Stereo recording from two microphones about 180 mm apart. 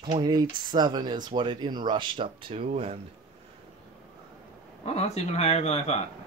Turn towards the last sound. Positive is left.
turn(degrees=40)  # may be behind; listen again after turning